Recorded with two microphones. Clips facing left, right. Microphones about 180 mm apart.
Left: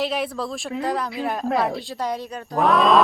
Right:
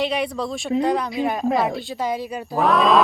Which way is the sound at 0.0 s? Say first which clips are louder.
Right 2 dB; centre (ahead or behind).